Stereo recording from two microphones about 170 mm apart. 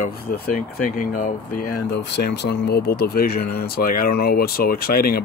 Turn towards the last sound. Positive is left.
turn(degrees=65)  # may be behind; listen again after turning